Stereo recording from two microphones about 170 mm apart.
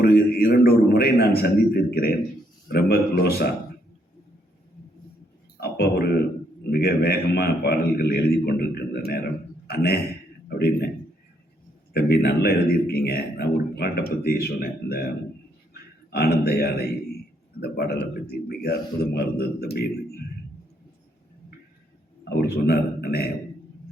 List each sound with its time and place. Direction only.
0.0 s speech: 65° left (ahead or behind)
5.5 s speech: 70° left (ahead or behind)
11.9 s a man's voice: 70° left (ahead or behind)
22.2 s a man's voice: 70° left (ahead or behind)